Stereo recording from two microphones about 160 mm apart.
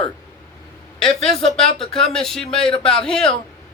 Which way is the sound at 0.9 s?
5° left (ahead or behind).